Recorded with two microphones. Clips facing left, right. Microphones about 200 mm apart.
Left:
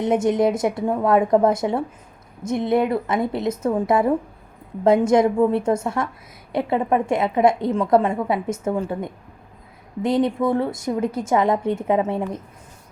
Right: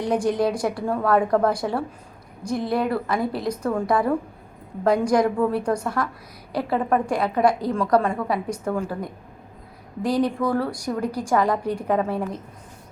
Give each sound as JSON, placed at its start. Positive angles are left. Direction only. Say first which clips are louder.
{"t": 0.0, "sound": "a woman's voice", "louder": "left 3 dB", "side_deg": 25}